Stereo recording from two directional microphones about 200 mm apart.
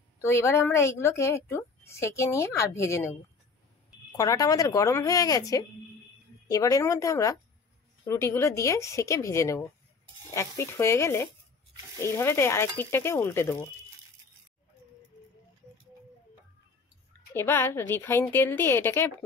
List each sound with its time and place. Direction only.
0.2 s a woman's voice: 15° left (ahead or behind)
4.2 s a woman's voice: 20° left (ahead or behind)
17.3 s a woman's voice: 10° left (ahead or behind)